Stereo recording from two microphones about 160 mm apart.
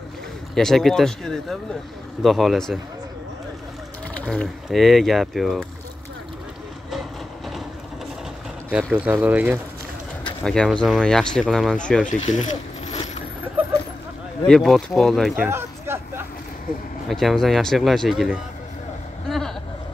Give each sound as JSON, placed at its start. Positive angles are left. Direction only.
{"t": 0.6, "sound": "speech", "side_deg": 0}
{"t": 4.1, "sound": "speech", "side_deg": 5}
{"t": 6.9, "sound": "vehicle", "side_deg": 0}
{"t": 8.9, "sound": "speech", "side_deg": -10}
{"t": 10.4, "sound": "speech", "side_deg": 5}
{"t": 12.1, "sound": "mechanisms", "side_deg": 50}
{"t": 14.4, "sound": "speech", "side_deg": 5}
{"t": 15.5, "sound": "a sound", "side_deg": -15}
{"t": 17.1, "sound": "speech", "side_deg": 0}
{"t": 19.2, "sound": "a sound", "side_deg": 0}